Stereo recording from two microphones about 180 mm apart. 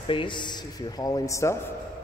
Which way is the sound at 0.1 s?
25° left (ahead or behind).